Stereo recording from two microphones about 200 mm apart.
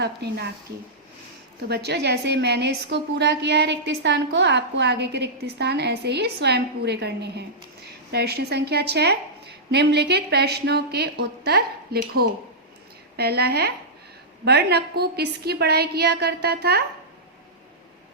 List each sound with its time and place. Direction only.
0.0 s a woman's voice: 55° right (ahead or behind)
1.6 s a woman's voice: 55° right (ahead or behind)